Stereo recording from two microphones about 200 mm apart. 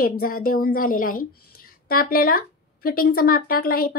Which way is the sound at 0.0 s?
45° left (ahead or behind).